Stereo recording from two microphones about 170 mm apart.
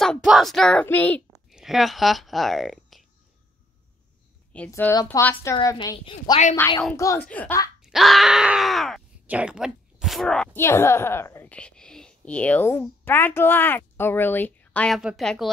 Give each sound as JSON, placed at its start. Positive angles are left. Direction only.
{"t": 0.0, "sound": "speech", "side_deg": 0}
{"t": 1.3, "sound": "speech", "side_deg": -5}
{"t": 4.6, "sound": "a woman's voice", "side_deg": 15}
{"t": 5.9, "sound": "a woman's voice", "side_deg": 35}
{"t": 7.0, "sound": "a woman's voice", "side_deg": 20}
{"t": 7.8, "sound": "speech", "side_deg": 0}
{"t": 10.6, "sound": "a woman's voice", "side_deg": 15}